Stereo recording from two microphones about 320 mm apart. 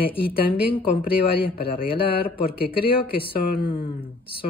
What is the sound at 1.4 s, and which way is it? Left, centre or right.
Speech, left.